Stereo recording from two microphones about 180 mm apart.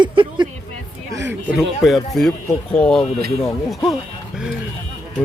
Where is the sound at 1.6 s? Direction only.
Centre (ahead or behind).